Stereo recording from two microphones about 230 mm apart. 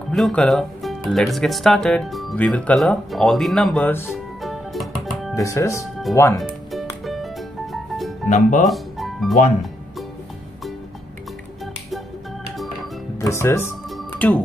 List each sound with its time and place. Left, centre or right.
0.1 s speech: centre
4.1 s music: centre
5.3 s speech: centre
6.4 s music: centre
8.3 s speech: left
8.6 s music: centre
13.2 s speech: centre
13.8 s music: centre